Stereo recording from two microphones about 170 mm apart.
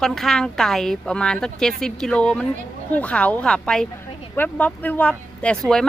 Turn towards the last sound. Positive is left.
turn(degrees=5)  # may be behind; listen again after turning